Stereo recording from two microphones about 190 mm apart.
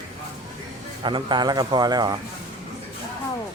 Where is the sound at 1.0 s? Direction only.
25° right (ahead or behind).